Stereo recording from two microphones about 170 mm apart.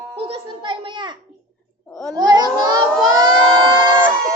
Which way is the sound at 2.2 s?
25° right (ahead or behind).